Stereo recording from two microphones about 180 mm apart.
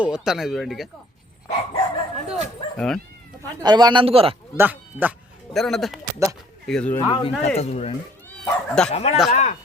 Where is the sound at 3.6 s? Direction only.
25° right (ahead or behind).